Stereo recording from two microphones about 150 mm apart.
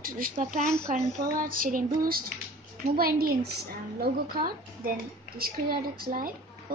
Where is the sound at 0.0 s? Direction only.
70° right (ahead or behind).